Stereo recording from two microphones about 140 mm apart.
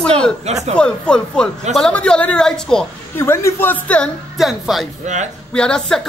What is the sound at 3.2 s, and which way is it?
A woman's voice, 20° left (ahead or behind).